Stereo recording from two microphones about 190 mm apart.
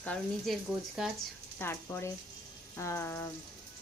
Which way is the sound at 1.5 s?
10° left (ahead or behind).